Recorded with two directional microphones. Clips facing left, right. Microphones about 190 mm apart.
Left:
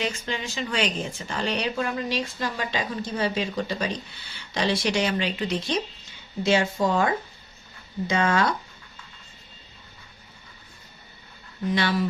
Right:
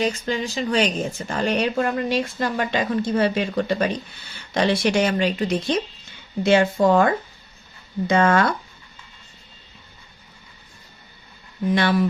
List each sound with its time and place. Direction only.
0.0 s speech: 40° right (ahead or behind)
6.4 s speech: 55° right (ahead or behind)
11.7 s speech: 55° right (ahead or behind)